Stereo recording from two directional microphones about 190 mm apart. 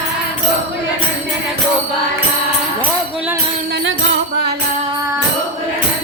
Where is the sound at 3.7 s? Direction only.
80° right.